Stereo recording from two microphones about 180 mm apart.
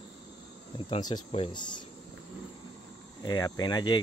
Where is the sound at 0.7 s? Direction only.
25° left (ahead or behind).